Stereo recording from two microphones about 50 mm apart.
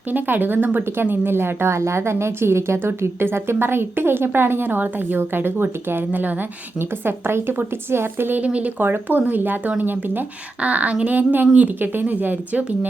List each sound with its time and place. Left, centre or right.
0.1 s a woman's voice: right
6.1 s speech: right
6.7 s a woman's voice: right
8.4 s speech: right
8.8 s speech: right
10.6 s speech: right